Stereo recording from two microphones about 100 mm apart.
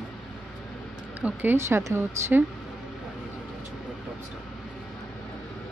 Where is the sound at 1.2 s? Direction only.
15° right (ahead or behind).